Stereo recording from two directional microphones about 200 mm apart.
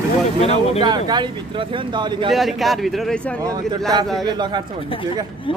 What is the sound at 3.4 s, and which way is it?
A man's voice, 20° right (ahead or behind).